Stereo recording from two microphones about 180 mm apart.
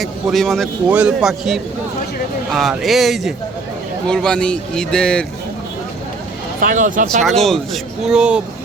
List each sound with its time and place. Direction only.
0.0 s a man's voice: centre (ahead or behind)
6.6 s speech: 45° right (ahead or behind)
7.3 s a man's voice: centre (ahead or behind)